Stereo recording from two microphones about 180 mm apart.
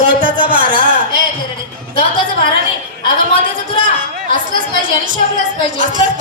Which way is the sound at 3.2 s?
50° right (ahead or behind).